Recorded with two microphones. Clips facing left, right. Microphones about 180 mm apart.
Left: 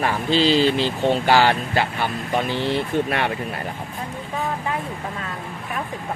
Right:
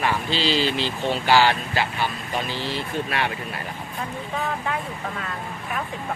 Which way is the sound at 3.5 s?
30° left (ahead or behind).